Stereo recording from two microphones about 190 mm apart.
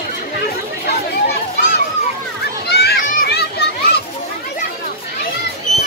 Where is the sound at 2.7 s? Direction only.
55° left (ahead or behind).